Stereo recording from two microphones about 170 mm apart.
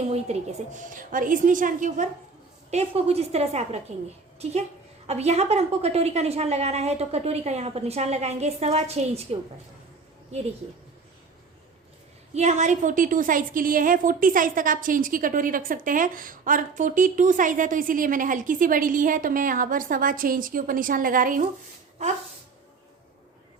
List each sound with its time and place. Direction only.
0.1 s a woman's voice: 40° right (ahead or behind)
2.6 s a woman's voice: 40° right (ahead or behind)
5.0 s a woman's voice: 40° right (ahead or behind)
12.3 s a woman's voice: 45° right (ahead or behind)